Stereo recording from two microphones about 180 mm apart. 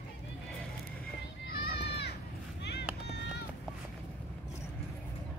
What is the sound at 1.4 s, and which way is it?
Children playing, 65° left (ahead or behind).